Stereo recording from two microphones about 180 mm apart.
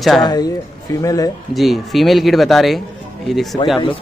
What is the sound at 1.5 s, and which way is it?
Speech, centre (ahead or behind).